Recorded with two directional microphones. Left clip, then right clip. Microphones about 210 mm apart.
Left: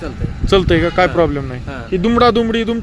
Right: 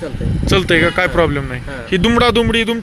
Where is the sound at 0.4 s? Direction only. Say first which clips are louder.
Even; 10° left (ahead or behind).